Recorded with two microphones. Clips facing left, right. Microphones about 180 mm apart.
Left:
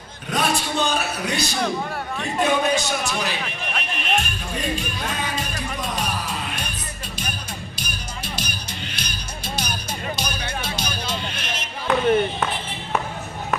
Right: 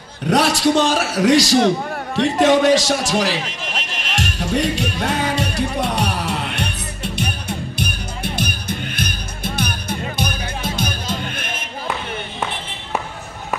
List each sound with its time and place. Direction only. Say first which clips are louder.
0.3 s a man's voice: right 8 dB; 85° right
7.2 s music: right 7 dB; 65° right (ahead or behind)